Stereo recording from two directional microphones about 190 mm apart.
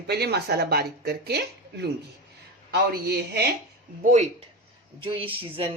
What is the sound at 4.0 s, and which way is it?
Speech, 40° right (ahead or behind).